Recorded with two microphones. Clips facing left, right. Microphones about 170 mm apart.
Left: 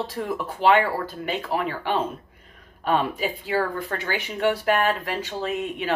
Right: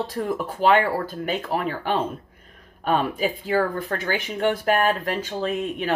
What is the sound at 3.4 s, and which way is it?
Speech, 45° right (ahead or behind).